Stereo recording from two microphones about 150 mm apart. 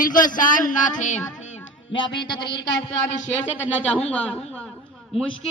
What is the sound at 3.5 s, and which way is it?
Speech, 10° left (ahead or behind).